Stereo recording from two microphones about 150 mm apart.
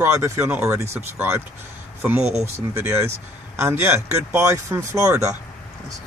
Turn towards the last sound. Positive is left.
turn(degrees=-20)  # may be behind; listen again after turning